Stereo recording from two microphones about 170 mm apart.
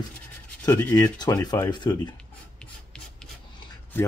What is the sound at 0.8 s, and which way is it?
Speech, 20° left (ahead or behind).